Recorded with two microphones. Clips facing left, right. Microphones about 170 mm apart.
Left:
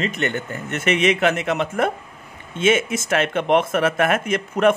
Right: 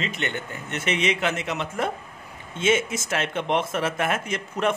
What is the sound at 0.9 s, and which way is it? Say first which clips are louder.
A man's voice: left 6 dB; 65° left (ahead or behind).